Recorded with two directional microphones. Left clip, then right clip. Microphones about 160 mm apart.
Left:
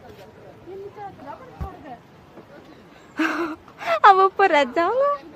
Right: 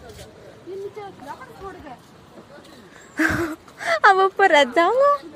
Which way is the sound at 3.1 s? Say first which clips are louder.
Right 2 dB; 5° right (ahead or behind).